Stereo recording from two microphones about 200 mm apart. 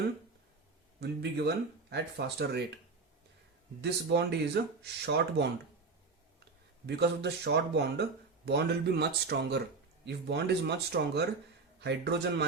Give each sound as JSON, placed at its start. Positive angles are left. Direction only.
{"t": 0.9, "sound": "speech", "side_deg": -55}
{"t": 3.8, "sound": "speech", "side_deg": -55}
{"t": 6.8, "sound": "speech", "side_deg": -55}